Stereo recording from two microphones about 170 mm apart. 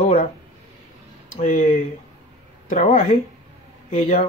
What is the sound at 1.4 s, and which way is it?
Speech, 40° left (ahead or behind).